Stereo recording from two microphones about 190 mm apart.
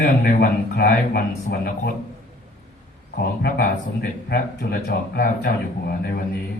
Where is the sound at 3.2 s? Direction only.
55° left (ahead or behind).